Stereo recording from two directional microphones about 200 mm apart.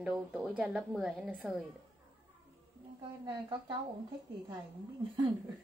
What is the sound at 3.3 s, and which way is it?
Speech, 20° right (ahead or behind).